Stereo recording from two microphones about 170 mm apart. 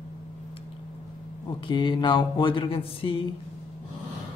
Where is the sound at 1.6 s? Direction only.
25° left (ahead or behind).